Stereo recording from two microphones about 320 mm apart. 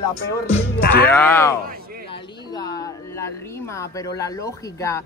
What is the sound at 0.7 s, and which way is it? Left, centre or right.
Music, left.